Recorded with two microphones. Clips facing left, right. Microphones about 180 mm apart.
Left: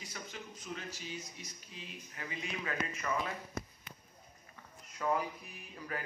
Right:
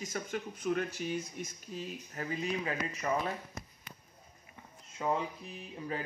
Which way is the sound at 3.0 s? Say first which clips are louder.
Right 5 dB; 30° right (ahead or behind).